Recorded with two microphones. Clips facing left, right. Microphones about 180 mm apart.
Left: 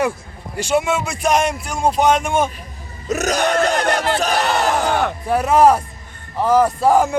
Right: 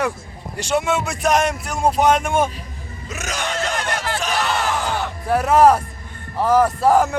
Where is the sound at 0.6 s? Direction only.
5° left (ahead or behind).